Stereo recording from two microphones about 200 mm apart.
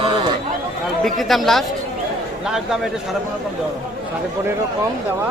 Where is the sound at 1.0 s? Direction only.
Centre (ahead or behind).